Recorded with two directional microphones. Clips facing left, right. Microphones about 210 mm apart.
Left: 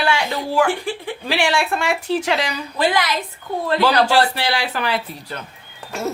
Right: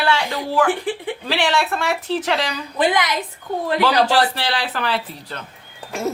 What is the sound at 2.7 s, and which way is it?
Speech, 20° right (ahead or behind).